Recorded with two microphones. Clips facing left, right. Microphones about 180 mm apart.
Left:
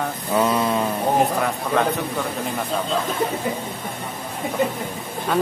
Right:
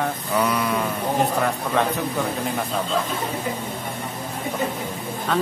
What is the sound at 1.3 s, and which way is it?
Speech, centre (ahead or behind).